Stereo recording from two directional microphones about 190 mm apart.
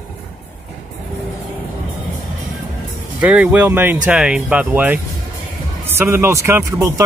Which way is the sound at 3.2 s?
5° right (ahead or behind).